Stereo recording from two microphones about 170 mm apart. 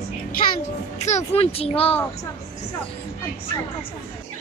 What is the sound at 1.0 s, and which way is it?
Speech, 40° left (ahead or behind).